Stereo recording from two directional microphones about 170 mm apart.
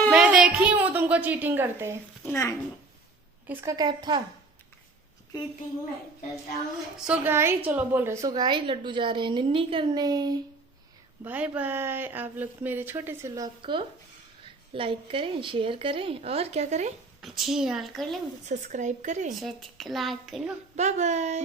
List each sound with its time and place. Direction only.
0.1 s a sound: 5° right (ahead or behind)
2.2 s speech: 15° left (ahead or behind)
3.4 s a woman's voice: 15° right (ahead or behind)
7.1 s a woman's voice: 15° right (ahead or behind)
11.2 s a woman's voice: 10° right (ahead or behind); by 16.9 s 40° right (ahead or behind)
17.2 s a woman's voice: centre (ahead or behind)
18.4 s speech: 45° right (ahead or behind)
19.4 s a woman's voice: centre (ahead or behind)
20.7 s speech: 40° right (ahead or behind)